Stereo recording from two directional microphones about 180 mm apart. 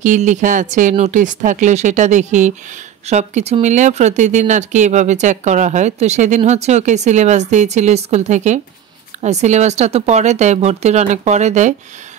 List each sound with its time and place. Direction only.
0.0 s speech: 45° right (ahead or behind)